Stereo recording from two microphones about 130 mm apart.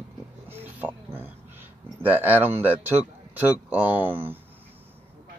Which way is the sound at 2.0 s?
15° right (ahead or behind).